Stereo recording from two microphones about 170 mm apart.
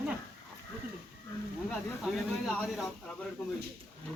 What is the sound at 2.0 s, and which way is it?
Speech, centre (ahead or behind).